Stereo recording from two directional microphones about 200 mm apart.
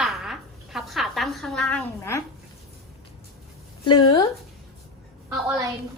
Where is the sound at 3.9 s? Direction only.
25° left (ahead or behind).